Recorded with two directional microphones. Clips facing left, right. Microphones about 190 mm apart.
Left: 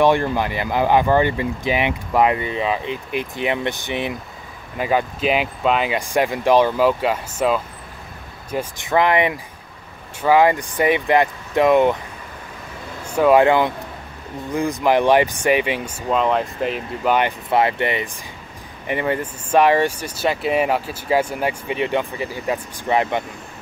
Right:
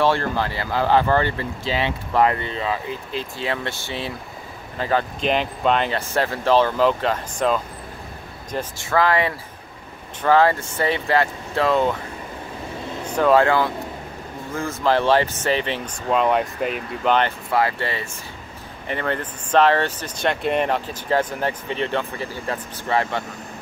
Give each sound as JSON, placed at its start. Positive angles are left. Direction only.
{"t": 0.0, "sound": "speech", "side_deg": 15}
{"t": 13.0, "sound": "speech", "side_deg": 10}
{"t": 16.1, "sound": "speech", "side_deg": 0}
{"t": 17.5, "sound": "speech", "side_deg": 20}